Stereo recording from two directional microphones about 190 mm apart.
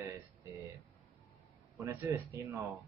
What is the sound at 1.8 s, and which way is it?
Speech, 15° right (ahead or behind).